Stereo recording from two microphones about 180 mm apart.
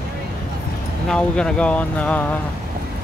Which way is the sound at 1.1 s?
5° left (ahead or behind).